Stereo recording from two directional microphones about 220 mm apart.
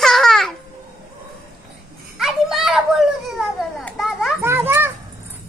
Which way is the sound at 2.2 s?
Centre (ahead or behind).